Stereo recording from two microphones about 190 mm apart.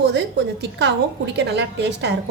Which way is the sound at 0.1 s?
65° right (ahead or behind).